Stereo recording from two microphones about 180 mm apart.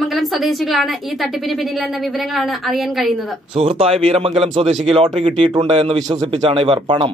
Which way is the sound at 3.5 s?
35° right (ahead or behind).